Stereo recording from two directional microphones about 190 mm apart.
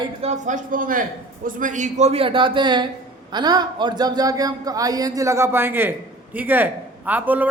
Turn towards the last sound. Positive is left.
turn(degrees=-10)  # may be behind; listen again after turning